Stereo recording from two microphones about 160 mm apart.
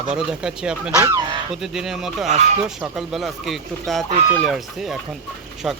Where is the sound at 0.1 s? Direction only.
5° right (ahead or behind).